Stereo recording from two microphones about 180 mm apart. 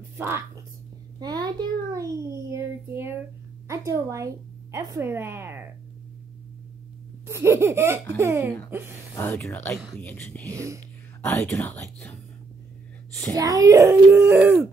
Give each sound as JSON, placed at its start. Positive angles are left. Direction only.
{"t": 1.2, "sound": "a child's voice", "side_deg": -20}
{"t": 7.2, "sound": "speech", "side_deg": -15}
{"t": 9.1, "sound": "speech", "side_deg": 10}
{"t": 10.5, "sound": "speech", "side_deg": -15}
{"t": 11.2, "sound": "speech", "side_deg": 10}
{"t": 13.3, "sound": "speech", "side_deg": -20}